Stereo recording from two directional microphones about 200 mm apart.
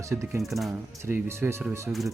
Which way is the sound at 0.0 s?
15° right (ahead or behind).